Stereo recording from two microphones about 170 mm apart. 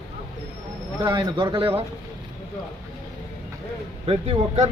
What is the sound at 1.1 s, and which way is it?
Speech, 25° right (ahead or behind).